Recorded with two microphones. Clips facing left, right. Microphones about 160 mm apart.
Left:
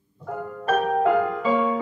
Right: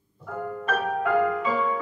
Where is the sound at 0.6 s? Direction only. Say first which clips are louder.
Left 6 dB; 25° left (ahead or behind).